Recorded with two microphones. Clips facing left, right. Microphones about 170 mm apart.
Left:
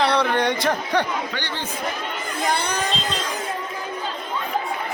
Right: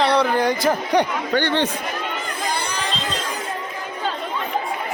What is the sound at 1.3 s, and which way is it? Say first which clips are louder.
Speech: right 10 dB; 60° right (ahead or behind).